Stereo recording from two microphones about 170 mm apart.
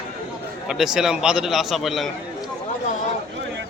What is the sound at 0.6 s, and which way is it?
A man's voice, 5° right (ahead or behind).